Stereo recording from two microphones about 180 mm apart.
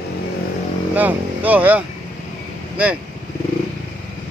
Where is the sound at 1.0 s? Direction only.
10° right (ahead or behind).